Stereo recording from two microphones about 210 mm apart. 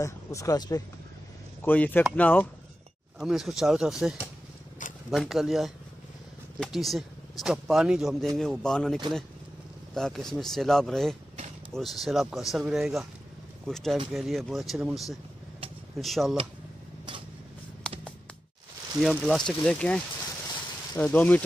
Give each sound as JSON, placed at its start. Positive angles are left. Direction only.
{"t": 0.0, "sound": "speech", "side_deg": 15}
{"t": 17.8, "sound": "music", "side_deg": 5}
{"t": 18.9, "sound": "speech", "side_deg": 0}
{"t": 21.0, "sound": "speech", "side_deg": 5}